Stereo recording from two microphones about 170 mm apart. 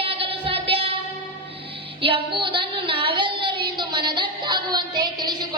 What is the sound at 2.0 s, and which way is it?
Child singing, 30° right (ahead or behind).